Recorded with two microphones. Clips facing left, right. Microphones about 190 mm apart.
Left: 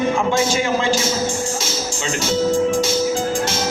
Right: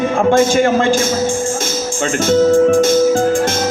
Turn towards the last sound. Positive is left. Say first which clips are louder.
# right 7 dB
turn(degrees=-50)  # may be behind; listen again after turning